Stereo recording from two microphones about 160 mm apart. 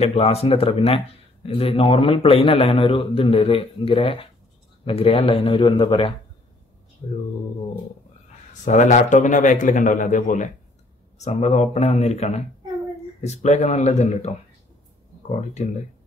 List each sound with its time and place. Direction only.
0.0 s speech: 40° left (ahead or behind)
7.0 s speech: 40° left (ahead or behind)
8.6 s speech: 50° left (ahead or behind)
15.6 s speech: 45° left (ahead or behind)